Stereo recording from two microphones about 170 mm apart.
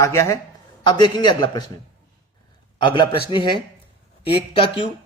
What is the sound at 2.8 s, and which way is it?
Speech, 30° left (ahead or behind).